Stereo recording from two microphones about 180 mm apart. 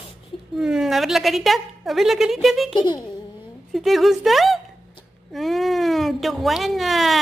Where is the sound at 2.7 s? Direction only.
25° left (ahead or behind).